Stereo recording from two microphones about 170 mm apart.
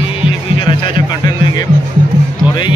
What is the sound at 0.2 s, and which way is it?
Music, 30° left (ahead or behind).